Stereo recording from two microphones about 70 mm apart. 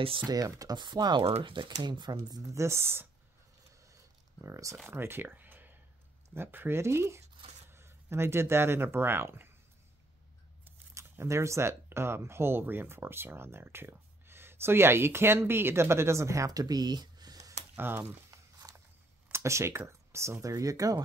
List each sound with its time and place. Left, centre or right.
0.3 s speech: right
2.4 s speech: right
3.8 s a sound: right
4.8 s speech: right
11.0 s speech: right
17.7 s speech: right
19.3 s speech: right